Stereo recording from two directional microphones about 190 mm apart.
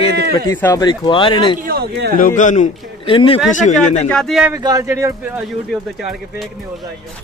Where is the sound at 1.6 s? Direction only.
55° right (ahead or behind).